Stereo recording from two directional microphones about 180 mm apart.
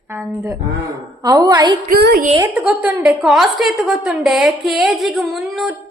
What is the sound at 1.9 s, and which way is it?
Speech, 60° right (ahead or behind).